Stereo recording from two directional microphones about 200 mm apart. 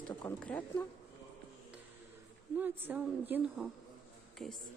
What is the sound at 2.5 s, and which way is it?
A woman's voice, 10° right (ahead or behind).